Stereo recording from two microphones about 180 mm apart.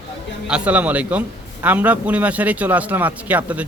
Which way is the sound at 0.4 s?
5° right (ahead or behind).